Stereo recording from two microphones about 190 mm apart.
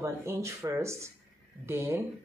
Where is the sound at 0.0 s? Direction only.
15° right (ahead or behind).